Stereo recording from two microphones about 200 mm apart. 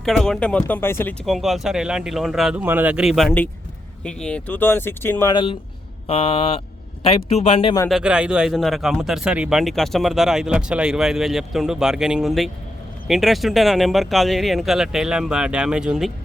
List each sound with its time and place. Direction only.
0.0 s speech: centre (ahead or behind)
1.2 s speech: centre (ahead or behind)
5.3 s speech: 25° left (ahead or behind)
7.9 s speech: 5° right (ahead or behind)